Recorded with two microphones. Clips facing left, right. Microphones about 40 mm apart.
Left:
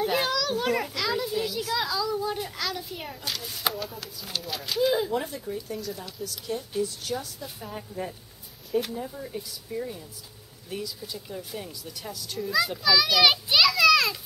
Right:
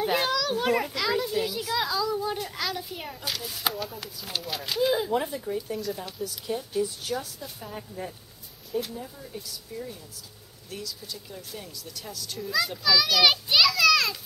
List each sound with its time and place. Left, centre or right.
0.0 s children playing: centre
2.5 s speech: centre
5.1 s speech: centre
7.4 s speech: centre